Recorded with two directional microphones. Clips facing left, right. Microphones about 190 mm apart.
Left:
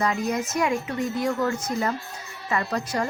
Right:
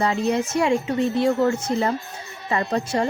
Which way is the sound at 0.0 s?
30° right (ahead or behind).